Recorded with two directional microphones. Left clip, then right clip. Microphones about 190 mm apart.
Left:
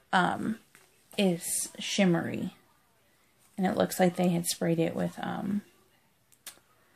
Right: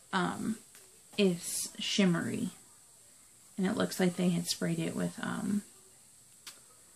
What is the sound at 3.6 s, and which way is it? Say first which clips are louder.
Speech: left 6 dB; 55° left (ahead or behind).